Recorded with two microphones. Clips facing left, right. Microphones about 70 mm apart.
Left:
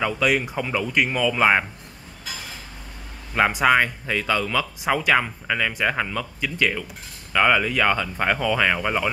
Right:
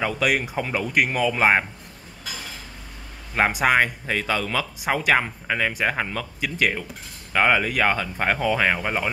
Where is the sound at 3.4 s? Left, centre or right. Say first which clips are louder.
Left 1 dB; centre.